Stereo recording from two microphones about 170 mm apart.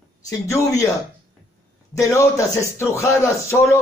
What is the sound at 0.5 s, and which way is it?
Speech, 15° left (ahead or behind).